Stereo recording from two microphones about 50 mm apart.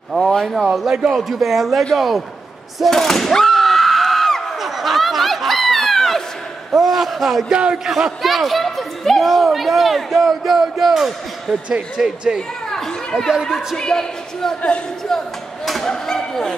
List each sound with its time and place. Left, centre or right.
0.1 s a sound: centre
0.8 s a man's voice: centre
1.3 s speech: centre
2.8 s a sound: centre
6.7 s speech: centre
7.5 s speech: centre
7.8 s a man's voice: centre
12.4 s chatter: centre
13.7 s speech: centre
15.0 s a sound: centre